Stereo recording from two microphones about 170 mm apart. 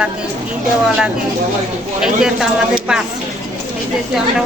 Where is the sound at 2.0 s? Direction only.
5° right (ahead or behind).